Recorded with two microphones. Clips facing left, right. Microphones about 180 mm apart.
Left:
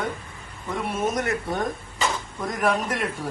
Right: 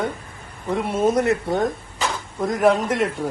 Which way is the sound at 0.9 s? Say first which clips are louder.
Right 7 dB; 30° right (ahead or behind).